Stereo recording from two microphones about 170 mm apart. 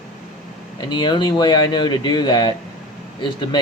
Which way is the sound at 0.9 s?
25° left (ahead or behind).